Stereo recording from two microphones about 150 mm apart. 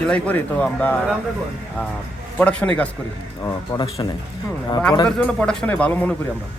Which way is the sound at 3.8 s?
30° left (ahead or behind).